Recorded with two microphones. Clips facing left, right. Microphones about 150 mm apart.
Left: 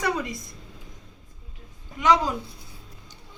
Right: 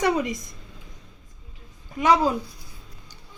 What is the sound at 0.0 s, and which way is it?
Speech, 20° right (ahead or behind).